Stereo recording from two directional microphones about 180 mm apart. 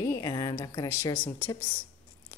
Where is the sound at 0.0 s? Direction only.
20° left (ahead or behind).